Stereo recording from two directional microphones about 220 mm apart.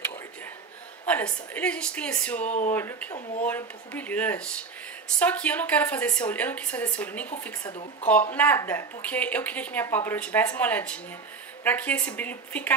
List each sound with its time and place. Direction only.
1.0 s a woman's voice: 5° left (ahead or behind)
2.4 s speech: 35° left (ahead or behind)
2.7 s speech: 10° left (ahead or behind)
7.6 s speech: 25° left (ahead or behind)
8.1 s speech: 10° left (ahead or behind)